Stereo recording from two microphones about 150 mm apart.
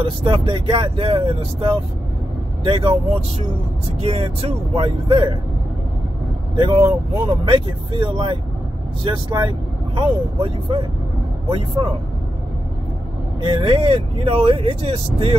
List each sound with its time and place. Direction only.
0.2 s speech: 35° right (ahead or behind)
6.5 s speech: 35° right (ahead or behind)
13.4 s speech: 35° right (ahead or behind)